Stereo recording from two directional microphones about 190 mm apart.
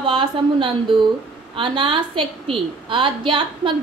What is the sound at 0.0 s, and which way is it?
A woman's voice, 25° right (ahead or behind).